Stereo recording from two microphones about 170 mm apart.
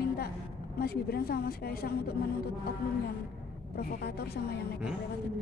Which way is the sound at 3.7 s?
65° left (ahead or behind).